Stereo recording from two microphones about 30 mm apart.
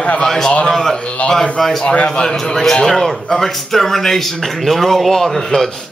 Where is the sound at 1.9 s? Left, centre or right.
Left.